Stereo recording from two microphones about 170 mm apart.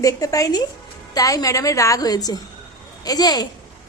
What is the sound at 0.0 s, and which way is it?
A woman's voice, 20° left (ahead or behind).